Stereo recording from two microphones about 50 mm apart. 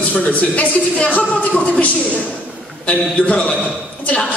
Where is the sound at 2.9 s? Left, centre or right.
Left.